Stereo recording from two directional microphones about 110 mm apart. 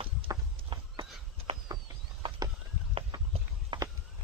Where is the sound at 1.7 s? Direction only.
35° right (ahead or behind).